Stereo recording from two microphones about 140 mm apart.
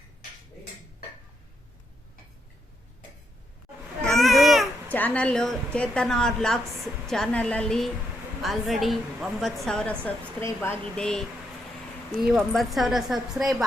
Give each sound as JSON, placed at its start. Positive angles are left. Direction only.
{"t": 4.0, "sound": "baby cry", "side_deg": 0}
{"t": 4.9, "sound": "a woman's voice", "side_deg": 10}
{"t": 10.4, "sound": "speech", "side_deg": 15}
{"t": 11.0, "sound": "a woman's voice", "side_deg": 5}
{"t": 12.3, "sound": "a woman's voice", "side_deg": 0}